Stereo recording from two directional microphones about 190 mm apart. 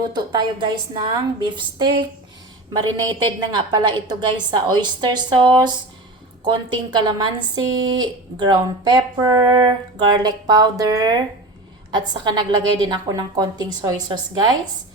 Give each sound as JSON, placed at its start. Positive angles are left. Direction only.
{"t": 0.1, "sound": "speech", "side_deg": -25}